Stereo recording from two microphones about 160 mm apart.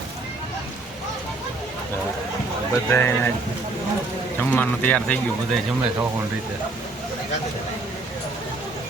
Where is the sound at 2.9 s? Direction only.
15° left (ahead or behind).